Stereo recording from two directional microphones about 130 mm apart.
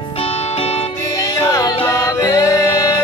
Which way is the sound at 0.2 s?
50° left (ahead or behind).